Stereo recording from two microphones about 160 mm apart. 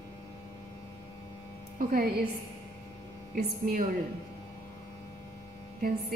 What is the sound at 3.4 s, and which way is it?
Speech, 65° right (ahead or behind).